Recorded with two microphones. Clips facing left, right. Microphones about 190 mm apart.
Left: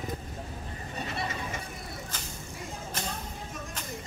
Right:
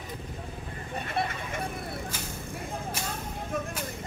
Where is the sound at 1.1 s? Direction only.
55° right (ahead or behind).